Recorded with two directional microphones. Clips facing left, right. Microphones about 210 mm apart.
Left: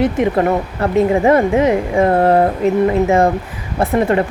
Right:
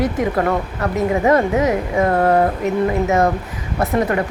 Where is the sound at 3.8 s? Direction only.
30° left (ahead or behind).